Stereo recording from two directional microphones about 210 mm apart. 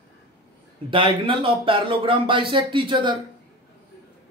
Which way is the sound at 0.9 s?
25° right (ahead or behind).